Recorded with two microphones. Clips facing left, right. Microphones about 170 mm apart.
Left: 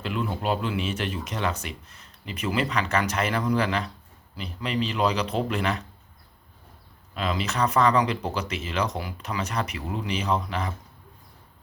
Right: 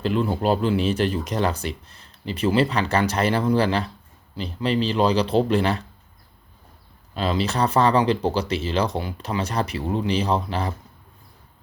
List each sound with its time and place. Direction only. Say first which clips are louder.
0.0 s speech: right 6 dB; 35° right (ahead or behind)
7.1 s speech: right 5 dB; 30° right (ahead or behind)